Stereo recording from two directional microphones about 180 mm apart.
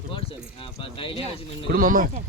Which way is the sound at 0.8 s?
30° left (ahead or behind).